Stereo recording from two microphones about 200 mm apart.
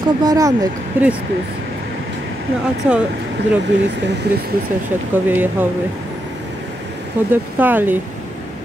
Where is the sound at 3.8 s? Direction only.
60° right (ahead or behind).